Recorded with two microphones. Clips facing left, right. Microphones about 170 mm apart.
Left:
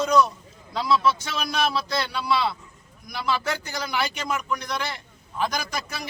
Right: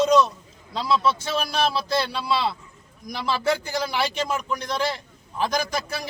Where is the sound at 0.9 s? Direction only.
30° right (ahead or behind).